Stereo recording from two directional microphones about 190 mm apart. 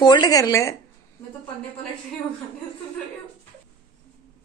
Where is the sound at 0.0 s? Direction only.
20° left (ahead or behind).